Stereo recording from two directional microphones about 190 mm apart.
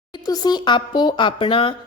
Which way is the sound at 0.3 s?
20° left (ahead or behind).